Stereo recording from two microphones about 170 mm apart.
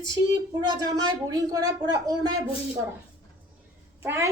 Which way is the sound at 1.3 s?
20° right (ahead or behind).